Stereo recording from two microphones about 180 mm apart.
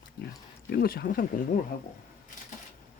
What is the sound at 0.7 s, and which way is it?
Speech, 55° left (ahead or behind).